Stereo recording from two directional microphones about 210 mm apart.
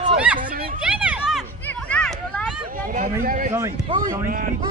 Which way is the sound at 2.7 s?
40° right (ahead or behind).